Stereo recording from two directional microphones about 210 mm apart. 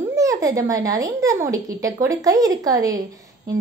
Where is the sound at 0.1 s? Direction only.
15° right (ahead or behind).